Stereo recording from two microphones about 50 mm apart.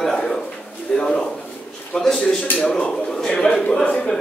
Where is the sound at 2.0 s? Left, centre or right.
Centre.